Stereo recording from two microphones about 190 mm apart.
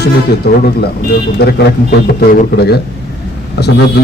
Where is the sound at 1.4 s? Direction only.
55° left (ahead or behind).